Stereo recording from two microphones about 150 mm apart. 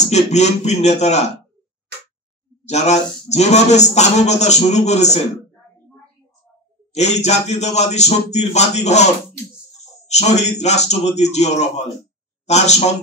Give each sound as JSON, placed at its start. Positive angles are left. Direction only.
{"t": 0.0, "sound": "a man's voice", "side_deg": 50}
{"t": 2.6, "sound": "a man's voice", "side_deg": 50}
{"t": 6.9, "sound": "a man's voice", "side_deg": 50}